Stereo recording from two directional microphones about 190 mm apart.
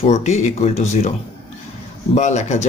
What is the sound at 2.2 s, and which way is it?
Speech, 35° left (ahead or behind).